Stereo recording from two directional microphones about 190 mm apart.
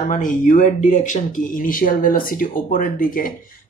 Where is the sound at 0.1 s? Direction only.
40° left (ahead or behind).